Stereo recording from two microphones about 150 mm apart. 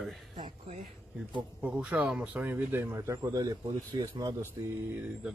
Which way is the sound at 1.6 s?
10° right (ahead or behind).